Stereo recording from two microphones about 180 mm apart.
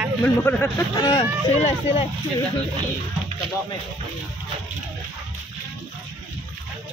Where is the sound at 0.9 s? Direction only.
25° left (ahead or behind).